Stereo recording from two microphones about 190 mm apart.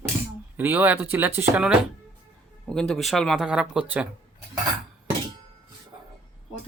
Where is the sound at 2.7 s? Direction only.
Centre (ahead or behind).